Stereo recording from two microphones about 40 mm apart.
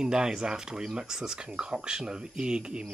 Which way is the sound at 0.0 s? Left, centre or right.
Centre.